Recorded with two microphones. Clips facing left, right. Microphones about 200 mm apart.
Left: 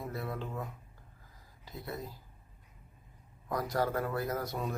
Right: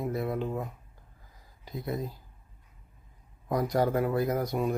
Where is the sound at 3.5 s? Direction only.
20° right (ahead or behind).